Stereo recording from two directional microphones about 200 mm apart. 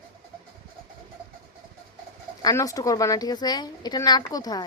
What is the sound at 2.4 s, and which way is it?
A woman's voice, 15° left (ahead or behind).